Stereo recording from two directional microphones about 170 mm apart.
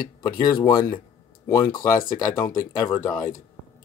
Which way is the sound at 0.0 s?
60° left (ahead or behind).